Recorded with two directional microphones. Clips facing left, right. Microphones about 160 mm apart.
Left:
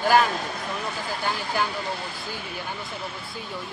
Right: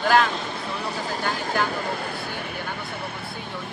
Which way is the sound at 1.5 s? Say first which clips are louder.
Right 2 dB; 55° right (ahead or behind).